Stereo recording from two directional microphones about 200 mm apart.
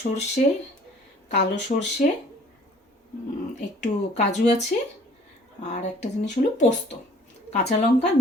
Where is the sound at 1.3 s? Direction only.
35° left (ahead or behind).